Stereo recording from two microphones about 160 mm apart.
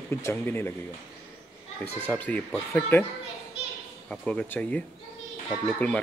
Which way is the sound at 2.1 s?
10° left (ahead or behind).